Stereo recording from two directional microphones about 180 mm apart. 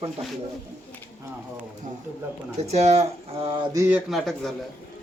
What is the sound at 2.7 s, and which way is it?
Speech, 35° right (ahead or behind).